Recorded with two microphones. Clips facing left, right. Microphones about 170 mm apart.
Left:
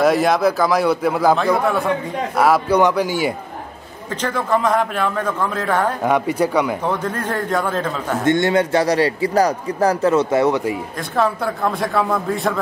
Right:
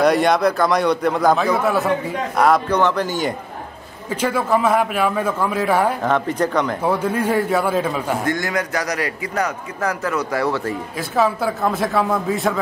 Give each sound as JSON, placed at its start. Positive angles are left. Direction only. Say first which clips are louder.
{"t": 0.0, "sound": "a man's voice", "louder": "even", "side_deg": 0}
{"t": 4.1, "sound": "a man's voice", "louder": "right 1 dB", "side_deg": -10}
{"t": 6.0, "sound": "a man's voice", "louder": "left 2 dB", "side_deg": 10}
{"t": 6.8, "sound": "a man's voice", "louder": "right 3 dB", "side_deg": -10}
{"t": 8.2, "sound": "a man's voice", "louder": "left 6 dB", "side_deg": 25}
{"t": 11.0, "sound": "a man's voice", "louder": "right 2 dB", "side_deg": -5}